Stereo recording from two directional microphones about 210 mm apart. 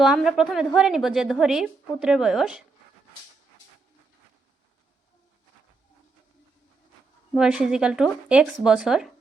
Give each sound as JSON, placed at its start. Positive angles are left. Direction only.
{"t": 0.0, "sound": "a woman's voice", "side_deg": 0}
{"t": 7.3, "sound": "a woman's voice", "side_deg": -5}